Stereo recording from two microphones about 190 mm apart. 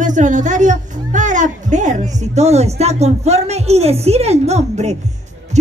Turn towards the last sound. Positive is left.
turn(degrees=-35)  # may be behind; listen again after turning